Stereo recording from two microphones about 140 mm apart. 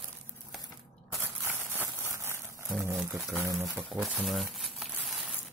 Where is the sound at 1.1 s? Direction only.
15° right (ahead or behind).